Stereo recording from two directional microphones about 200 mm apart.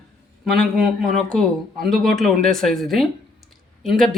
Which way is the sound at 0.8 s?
Centre (ahead or behind).